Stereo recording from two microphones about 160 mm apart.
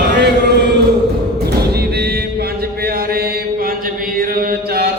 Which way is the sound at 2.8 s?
70° right (ahead or behind).